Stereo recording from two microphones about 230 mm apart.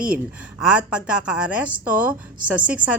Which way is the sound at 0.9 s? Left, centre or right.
Centre.